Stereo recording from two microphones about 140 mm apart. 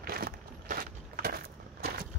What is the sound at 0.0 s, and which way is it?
Crushing, 90° right.